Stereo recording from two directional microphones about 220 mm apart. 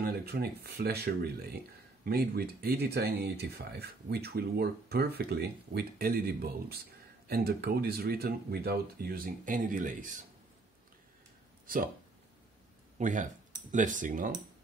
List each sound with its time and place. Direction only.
0.0 s speech: 45° right (ahead or behind)
11.6 s speech: 40° right (ahead or behind)
13.0 s speech: 35° right (ahead or behind)